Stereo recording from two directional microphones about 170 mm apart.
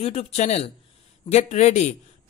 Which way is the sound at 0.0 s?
35° left (ahead or behind).